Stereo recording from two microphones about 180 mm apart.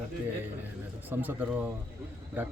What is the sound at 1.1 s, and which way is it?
Speech, 10° right (ahead or behind).